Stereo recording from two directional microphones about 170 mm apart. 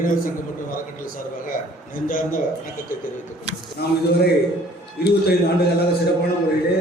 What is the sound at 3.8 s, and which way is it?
Speech, 70° left (ahead or behind).